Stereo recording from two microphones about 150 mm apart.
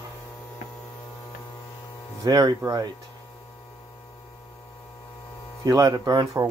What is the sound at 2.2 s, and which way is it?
Speech, 25° right (ahead or behind).